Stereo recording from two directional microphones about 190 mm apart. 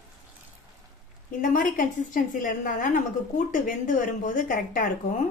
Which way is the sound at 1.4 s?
45° left (ahead or behind).